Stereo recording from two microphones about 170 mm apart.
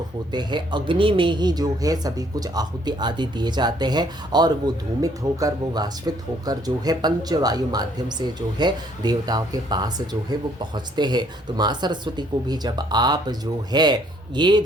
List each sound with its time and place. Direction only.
0.3 s speech: 25° right (ahead or behind)